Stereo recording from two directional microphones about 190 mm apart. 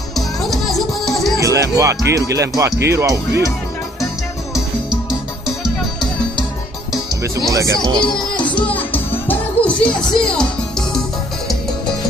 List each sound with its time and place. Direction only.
0.5 s music: centre (ahead or behind)
1.4 s speech: 15° right (ahead or behind)
7.5 s speech: 20° right (ahead or behind)
8.1 s music: 25° left (ahead or behind)
8.5 s music: 10° left (ahead or behind)